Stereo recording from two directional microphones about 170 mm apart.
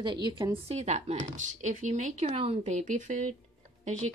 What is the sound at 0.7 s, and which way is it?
A woman's voice, 40° right (ahead or behind).